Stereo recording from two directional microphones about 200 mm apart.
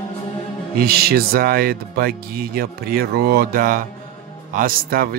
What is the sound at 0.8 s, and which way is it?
Speech, 50° right (ahead or behind).